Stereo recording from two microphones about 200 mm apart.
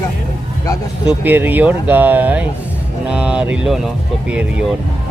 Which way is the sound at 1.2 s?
10° right (ahead or behind).